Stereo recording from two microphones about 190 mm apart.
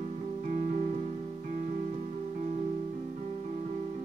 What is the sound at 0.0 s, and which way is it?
Music, 40° right (ahead or behind).